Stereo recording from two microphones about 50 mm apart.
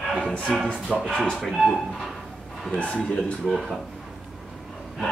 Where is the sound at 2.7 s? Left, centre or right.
Left.